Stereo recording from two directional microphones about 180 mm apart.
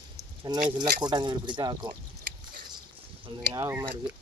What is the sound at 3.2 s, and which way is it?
Speech, 20° right (ahead or behind).